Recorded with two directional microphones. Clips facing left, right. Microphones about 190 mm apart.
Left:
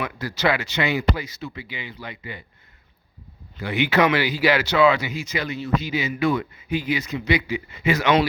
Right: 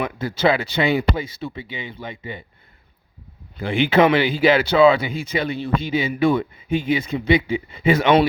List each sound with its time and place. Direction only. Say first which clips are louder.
0.2 s speech: right 4 dB; 25° right (ahead or behind)
3.6 s speech: right 4 dB; 30° right (ahead or behind)